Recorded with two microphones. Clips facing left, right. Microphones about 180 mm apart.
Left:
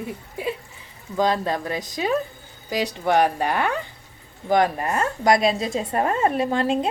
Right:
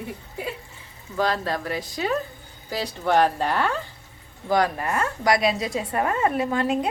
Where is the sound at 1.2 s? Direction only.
20° left (ahead or behind).